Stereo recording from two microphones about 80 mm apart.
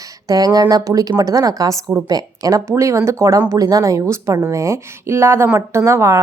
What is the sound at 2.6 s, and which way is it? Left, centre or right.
Speech, right.